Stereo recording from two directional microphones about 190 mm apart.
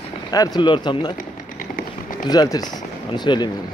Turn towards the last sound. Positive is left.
turn(degrees=25)  # may be behind; listen again after turning